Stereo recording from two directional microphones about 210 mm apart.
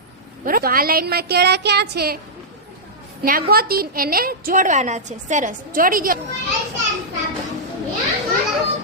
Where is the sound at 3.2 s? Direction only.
45° right (ahead or behind).